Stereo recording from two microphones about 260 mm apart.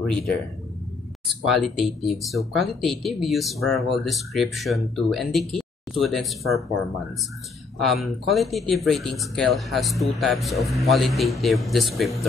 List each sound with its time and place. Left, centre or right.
1.4 s speech: centre
7.8 s speech: centre